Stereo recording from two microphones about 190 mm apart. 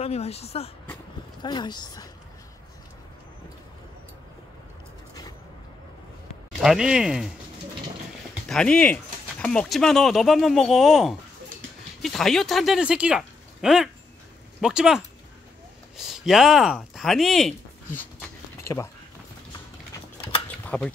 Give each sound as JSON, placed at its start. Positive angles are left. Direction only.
{"t": 0.0, "sound": "speech", "side_deg": 35}
{"t": 1.4, "sound": "speech", "side_deg": 25}
{"t": 6.6, "sound": "speech", "side_deg": -5}
{"t": 8.5, "sound": "speech", "side_deg": 5}
{"t": 18.6, "sound": "a sound", "side_deg": 15}
{"t": 20.4, "sound": "a sound", "side_deg": 10}